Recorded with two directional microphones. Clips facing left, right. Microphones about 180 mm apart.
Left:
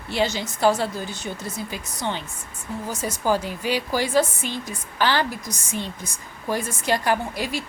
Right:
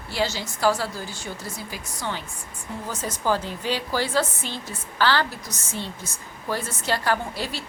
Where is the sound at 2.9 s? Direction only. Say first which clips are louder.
Left 2 dB; 10° left (ahead or behind).